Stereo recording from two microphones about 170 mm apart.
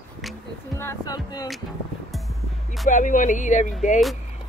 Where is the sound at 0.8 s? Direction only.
20° left (ahead or behind).